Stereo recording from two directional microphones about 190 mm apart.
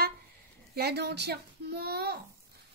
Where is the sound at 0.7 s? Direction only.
60° right (ahead or behind).